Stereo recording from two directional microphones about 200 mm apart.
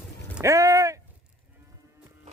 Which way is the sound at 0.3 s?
15° right (ahead or behind).